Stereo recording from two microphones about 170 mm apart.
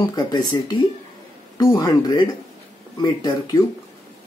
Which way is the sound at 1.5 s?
20° left (ahead or behind).